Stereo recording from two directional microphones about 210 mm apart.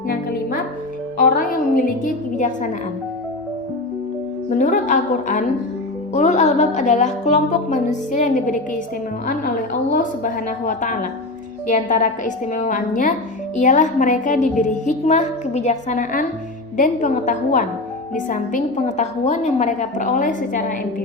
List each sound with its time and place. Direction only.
1.2 s a woman's voice: 40° left (ahead or behind)
4.5 s a woman's voice: 40° left (ahead or behind)
9.9 s a woman's voice: 40° left (ahead or behind)